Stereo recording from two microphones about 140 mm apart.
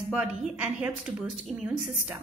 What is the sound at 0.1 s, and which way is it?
A woman's voice, 10° right (ahead or behind).